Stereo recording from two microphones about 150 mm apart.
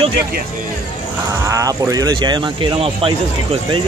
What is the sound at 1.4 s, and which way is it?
Speech, 20° right (ahead or behind).